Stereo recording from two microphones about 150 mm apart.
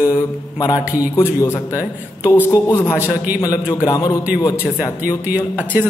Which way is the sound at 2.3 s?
15° left (ahead or behind).